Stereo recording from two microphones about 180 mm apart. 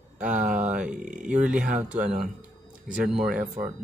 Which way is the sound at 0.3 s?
45° right (ahead or behind).